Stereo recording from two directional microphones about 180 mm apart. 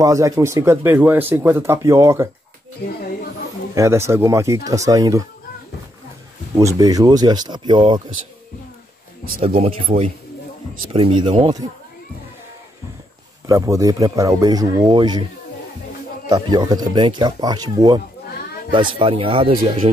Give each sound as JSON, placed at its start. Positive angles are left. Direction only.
{"t": 0.0, "sound": "speech", "side_deg": -20}
{"t": 2.8, "sound": "speech", "side_deg": 60}
{"t": 3.7, "sound": "speech", "side_deg": -15}
{"t": 6.6, "sound": "speech", "side_deg": -20}
{"t": 9.4, "sound": "speech", "side_deg": -35}
{"t": 13.5, "sound": "speech", "side_deg": -20}
{"t": 16.3, "sound": "speech", "side_deg": -20}